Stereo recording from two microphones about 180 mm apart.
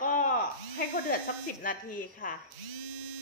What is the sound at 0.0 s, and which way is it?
Electric shaver, 45° left (ahead or behind).